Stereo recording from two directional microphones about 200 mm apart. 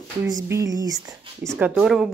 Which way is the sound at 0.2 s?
15° right (ahead or behind).